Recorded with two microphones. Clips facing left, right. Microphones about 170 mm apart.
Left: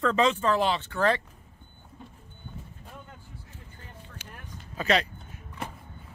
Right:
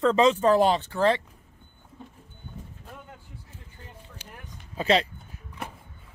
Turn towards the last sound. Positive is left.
turn(degrees=-25)  # may be behind; listen again after turning